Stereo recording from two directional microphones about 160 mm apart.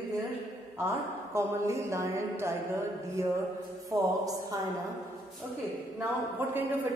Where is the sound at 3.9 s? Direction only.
20° right (ahead or behind).